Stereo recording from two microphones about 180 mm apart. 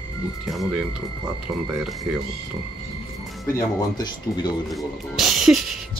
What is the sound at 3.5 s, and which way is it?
Speech, 25° left (ahead or behind).